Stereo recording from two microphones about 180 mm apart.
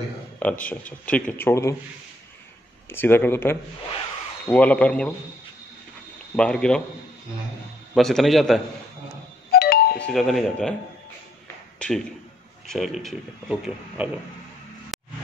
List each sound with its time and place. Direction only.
0.4 s speech: 10° left (ahead or behind)
2.9 s speech: 10° left (ahead or behind)
6.3 s speech: 5° left (ahead or behind)
7.9 s speech: centre (ahead or behind)
9.5 s music: 60° left (ahead or behind)
9.9 s speech: 5° left (ahead or behind)
11.8 s speech: 5° left (ahead or behind)
14.9 s a sound: centre (ahead or behind)